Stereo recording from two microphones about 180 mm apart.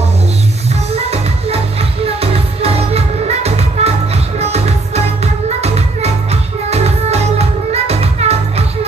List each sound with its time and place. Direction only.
0.9 s music: 35° right (ahead or behind)